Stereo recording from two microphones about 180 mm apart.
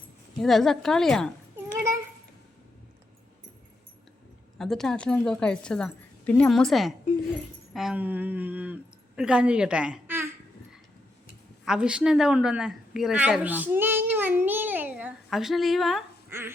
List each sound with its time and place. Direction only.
0.3 s a woman's voice: centre (ahead or behind)
1.5 s a sound: 15° right (ahead or behind)
4.5 s a woman's voice: centre (ahead or behind)
11.6 s a woman's voice: 5° right (ahead or behind)
16.3 s speech: 15° right (ahead or behind)